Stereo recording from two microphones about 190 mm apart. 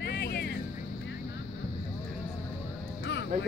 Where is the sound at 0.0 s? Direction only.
60° left (ahead or behind).